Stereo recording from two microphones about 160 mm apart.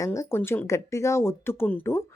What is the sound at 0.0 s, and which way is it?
Speech, 20° left (ahead or behind).